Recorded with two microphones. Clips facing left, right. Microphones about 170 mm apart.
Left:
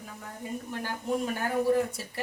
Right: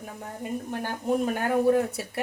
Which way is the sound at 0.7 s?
50° right (ahead or behind).